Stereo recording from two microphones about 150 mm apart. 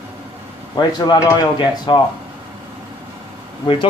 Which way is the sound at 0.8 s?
30° left (ahead or behind).